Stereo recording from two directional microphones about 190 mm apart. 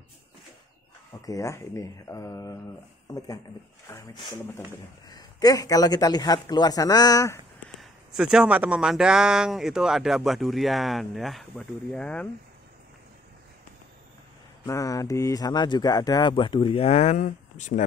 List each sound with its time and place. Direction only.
1.2 s speech: 15° left (ahead or behind)
3.9 s speech: 15° left (ahead or behind)
7.8 s speech: 5° right (ahead or behind)
14.7 s speech: 15° left (ahead or behind); by 17.8 s 40° left (ahead or behind)